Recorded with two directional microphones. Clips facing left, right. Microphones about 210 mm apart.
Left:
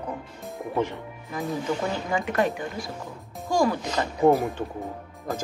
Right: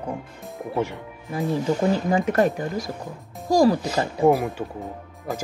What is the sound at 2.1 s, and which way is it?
Speech, 40° right (ahead or behind).